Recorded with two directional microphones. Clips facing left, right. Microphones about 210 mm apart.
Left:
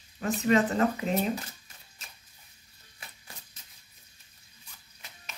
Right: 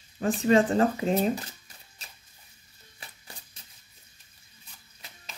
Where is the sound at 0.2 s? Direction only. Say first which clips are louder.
Right 3 dB; 30° right (ahead or behind).